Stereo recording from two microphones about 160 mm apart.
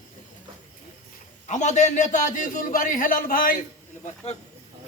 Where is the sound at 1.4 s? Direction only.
50° left (ahead or behind).